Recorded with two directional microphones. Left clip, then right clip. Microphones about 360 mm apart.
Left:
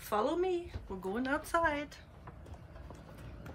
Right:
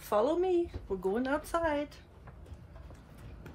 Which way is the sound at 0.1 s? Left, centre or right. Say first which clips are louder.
Right 4 dB; centre.